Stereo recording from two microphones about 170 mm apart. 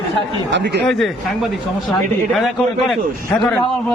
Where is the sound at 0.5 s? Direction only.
90° right.